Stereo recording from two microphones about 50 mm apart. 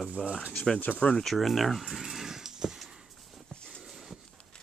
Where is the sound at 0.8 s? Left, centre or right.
Left.